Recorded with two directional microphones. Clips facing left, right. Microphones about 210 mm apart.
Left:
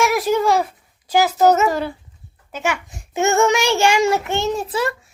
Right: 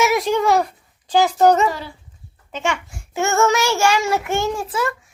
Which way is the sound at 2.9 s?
20° left (ahead or behind).